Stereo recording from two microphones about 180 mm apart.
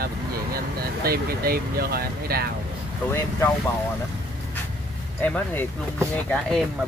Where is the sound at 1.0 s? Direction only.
60° right (ahead or behind).